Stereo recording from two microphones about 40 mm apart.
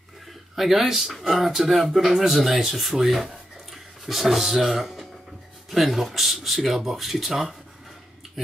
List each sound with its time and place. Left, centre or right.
0.3 s speech: centre